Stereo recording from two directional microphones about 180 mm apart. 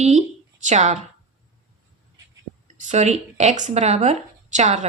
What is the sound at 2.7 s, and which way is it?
Speech, 45° right (ahead or behind).